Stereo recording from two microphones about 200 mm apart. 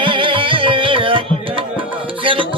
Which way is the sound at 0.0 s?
25° right (ahead or behind).